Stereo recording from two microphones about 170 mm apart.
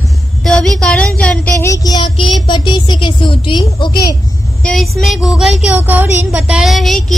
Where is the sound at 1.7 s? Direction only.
25° left (ahead or behind).